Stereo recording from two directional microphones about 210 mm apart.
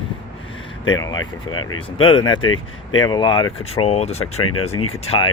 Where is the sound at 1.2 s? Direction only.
85° left.